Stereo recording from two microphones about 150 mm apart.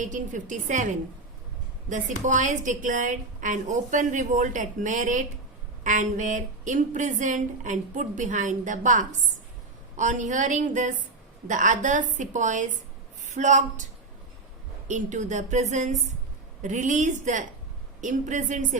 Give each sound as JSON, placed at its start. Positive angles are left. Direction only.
{"t": 0.0, "sound": "a woman's voice", "side_deg": -60}
{"t": 2.2, "sound": "a woman's voice", "side_deg": -55}
{"t": 14.8, "sound": "a woman's voice", "side_deg": -55}